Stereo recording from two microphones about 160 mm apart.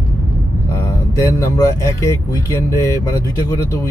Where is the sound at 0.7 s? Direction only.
20° left (ahead or behind).